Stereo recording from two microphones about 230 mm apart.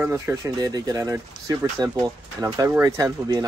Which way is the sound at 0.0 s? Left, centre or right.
Centre.